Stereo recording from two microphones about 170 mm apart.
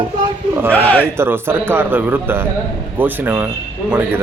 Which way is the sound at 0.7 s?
10° left (ahead or behind).